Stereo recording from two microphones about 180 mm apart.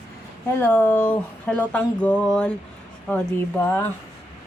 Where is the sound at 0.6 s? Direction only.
10° left (ahead or behind).